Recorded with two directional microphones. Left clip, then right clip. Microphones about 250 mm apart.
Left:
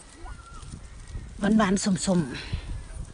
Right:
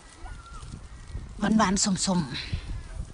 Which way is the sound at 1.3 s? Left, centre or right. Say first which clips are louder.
Even; centre.